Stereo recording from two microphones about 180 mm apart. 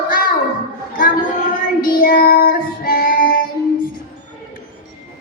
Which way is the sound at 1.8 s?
55° left (ahead or behind).